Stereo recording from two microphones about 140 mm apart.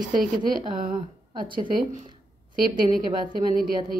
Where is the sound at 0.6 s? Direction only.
35° right (ahead or behind).